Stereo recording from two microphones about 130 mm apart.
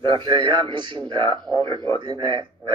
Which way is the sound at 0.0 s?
40° right (ahead or behind).